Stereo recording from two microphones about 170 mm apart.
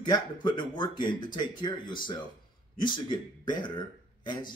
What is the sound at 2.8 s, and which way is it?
Speech, 25° left (ahead or behind).